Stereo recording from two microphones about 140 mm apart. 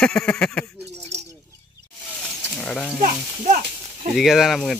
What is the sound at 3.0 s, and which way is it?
Speech, 60° right (ahead or behind).